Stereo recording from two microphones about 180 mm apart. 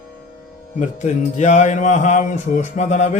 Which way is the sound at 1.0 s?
40° left (ahead or behind).